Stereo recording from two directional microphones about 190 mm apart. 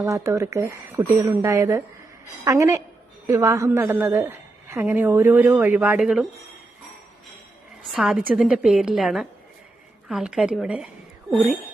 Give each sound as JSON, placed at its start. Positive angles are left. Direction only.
{"t": 0.0, "sound": "a woman's voice", "side_deg": -15}
{"t": 7.9, "sound": "a woman's voice", "side_deg": -5}